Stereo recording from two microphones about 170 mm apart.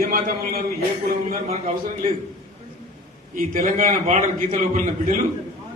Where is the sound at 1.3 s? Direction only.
45° right (ahead or behind).